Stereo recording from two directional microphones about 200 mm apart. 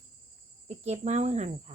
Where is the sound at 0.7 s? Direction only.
35° right (ahead or behind).